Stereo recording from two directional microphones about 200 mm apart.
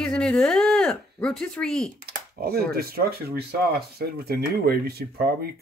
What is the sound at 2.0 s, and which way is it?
Speech, 50° right (ahead or behind).